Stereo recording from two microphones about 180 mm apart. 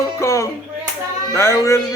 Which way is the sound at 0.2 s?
15° left (ahead or behind).